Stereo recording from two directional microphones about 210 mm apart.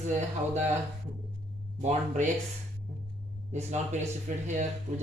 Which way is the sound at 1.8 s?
30° right (ahead or behind).